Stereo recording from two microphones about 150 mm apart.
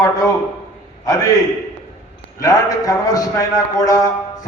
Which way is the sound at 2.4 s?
25° left (ahead or behind).